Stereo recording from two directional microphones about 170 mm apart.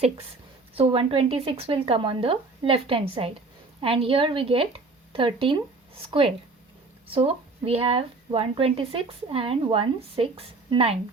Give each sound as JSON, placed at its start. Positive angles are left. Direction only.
{"t": 0.8, "sound": "speech", "side_deg": -35}